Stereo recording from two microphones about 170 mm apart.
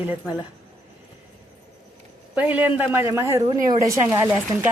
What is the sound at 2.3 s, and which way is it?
Speech, 10° right (ahead or behind).